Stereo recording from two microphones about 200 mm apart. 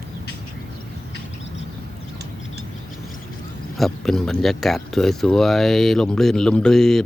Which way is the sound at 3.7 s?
Centre (ahead or behind).